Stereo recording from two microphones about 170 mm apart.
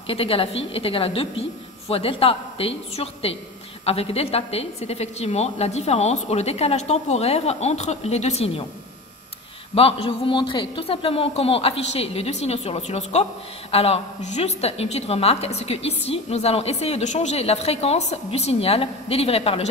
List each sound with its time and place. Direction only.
0.0 s a woman's voice: 35° left (ahead or behind)
9.8 s a woman's voice: 35° left (ahead or behind)